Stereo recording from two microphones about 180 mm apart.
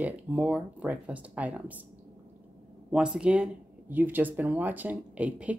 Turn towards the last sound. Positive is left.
turn(degrees=-5)  # may be behind; listen again after turning